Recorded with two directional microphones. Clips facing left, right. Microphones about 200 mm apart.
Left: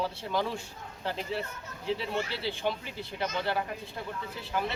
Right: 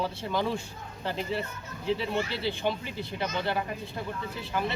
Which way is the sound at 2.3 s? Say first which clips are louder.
Right 3 dB; 35° left (ahead or behind).